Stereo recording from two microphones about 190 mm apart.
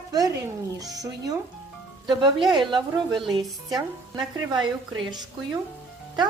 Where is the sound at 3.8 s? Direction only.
20° right (ahead or behind).